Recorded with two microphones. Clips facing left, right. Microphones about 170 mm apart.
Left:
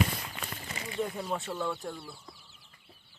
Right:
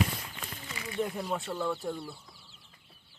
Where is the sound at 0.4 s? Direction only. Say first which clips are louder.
Left 2 dB; 70° left (ahead or behind).